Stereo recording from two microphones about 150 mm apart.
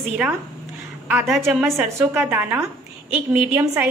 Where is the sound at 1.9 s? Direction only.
10° right (ahead or behind).